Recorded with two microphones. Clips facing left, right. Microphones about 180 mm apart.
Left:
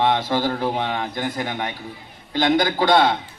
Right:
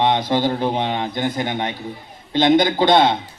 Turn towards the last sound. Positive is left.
turn(degrees=-20)  # may be behind; listen again after turning